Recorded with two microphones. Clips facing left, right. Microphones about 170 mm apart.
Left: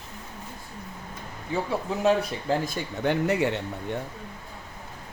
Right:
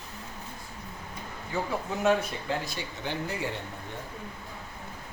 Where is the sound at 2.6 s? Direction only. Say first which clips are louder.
Left 9 dB; 50° left (ahead or behind).